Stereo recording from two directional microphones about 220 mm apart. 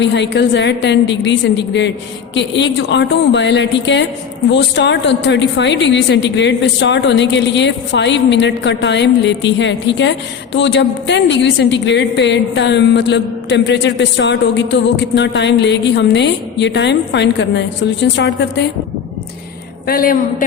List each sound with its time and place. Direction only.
0.0 s a woman's voice: 50° left (ahead or behind)
19.9 s a man's voice: 40° left (ahead or behind)